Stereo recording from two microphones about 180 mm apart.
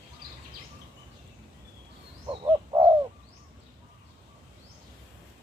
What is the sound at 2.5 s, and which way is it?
Bird, 20° right (ahead or behind).